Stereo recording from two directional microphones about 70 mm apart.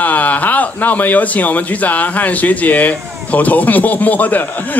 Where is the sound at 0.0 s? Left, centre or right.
Left.